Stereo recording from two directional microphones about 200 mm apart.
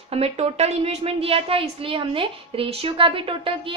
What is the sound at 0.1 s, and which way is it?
A woman's voice, 30° right (ahead or behind).